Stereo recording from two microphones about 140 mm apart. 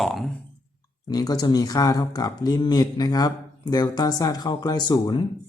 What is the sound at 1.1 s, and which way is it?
Speech, 25° left (ahead or behind).